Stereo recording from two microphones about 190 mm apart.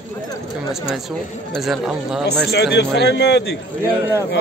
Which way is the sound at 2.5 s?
65° left (ahead or behind).